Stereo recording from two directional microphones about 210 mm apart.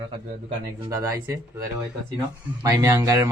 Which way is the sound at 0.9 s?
15° right (ahead or behind).